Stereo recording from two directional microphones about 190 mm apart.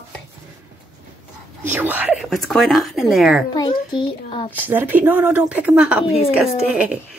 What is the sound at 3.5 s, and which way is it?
Speech, 25° left (ahead or behind).